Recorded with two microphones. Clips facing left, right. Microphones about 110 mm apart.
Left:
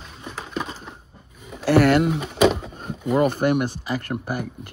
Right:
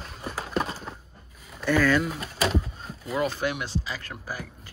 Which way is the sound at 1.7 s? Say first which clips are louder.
Left 6 dB; 70° left (ahead or behind).